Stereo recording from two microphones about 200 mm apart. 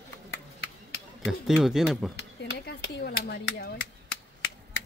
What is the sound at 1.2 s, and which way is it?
Speech, centre (ahead or behind).